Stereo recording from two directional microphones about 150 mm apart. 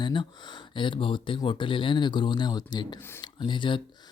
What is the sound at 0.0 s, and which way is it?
Speech, 30° left (ahead or behind).